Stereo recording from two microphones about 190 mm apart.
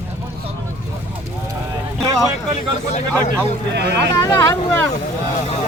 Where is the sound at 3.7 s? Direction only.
65° right (ahead or behind).